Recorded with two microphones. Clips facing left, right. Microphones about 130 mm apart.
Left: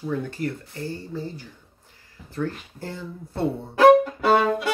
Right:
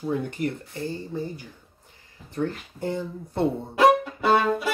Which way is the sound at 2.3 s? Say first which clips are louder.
Right 1 dB; 20° right (ahead or behind).